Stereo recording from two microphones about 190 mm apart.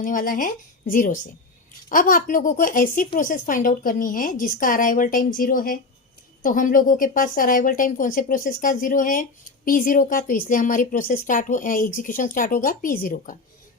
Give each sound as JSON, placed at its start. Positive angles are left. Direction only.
{"t": 0.0, "sound": "a woman's voice", "side_deg": 45}